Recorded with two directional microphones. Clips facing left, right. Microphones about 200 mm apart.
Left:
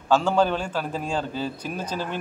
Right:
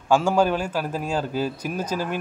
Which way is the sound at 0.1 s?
10° right (ahead or behind).